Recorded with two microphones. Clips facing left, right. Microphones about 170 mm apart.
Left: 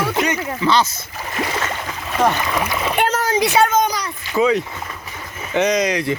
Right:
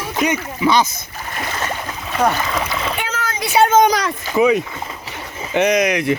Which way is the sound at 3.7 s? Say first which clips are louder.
Right 5 dB; 85° right.